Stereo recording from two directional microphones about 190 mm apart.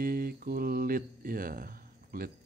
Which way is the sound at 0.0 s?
50° right (ahead or behind).